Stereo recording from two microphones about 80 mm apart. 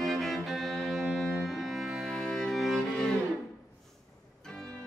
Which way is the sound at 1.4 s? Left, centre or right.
Centre.